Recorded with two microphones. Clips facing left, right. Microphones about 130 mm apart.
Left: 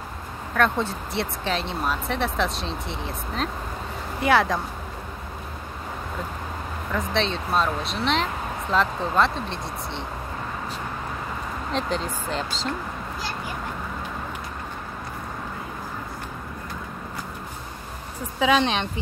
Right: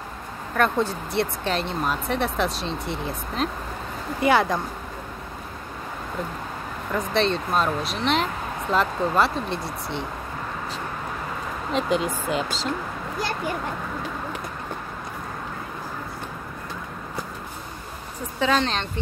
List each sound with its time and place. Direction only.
0.6 s speech: centre (ahead or behind)
6.9 s speech: centre (ahead or behind)
11.7 s speech: 10° right (ahead or behind)
18.6 s speech: 10° left (ahead or behind)